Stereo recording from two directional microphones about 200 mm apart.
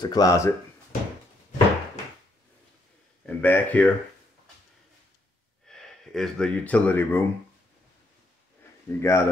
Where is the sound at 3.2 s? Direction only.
10° left (ahead or behind).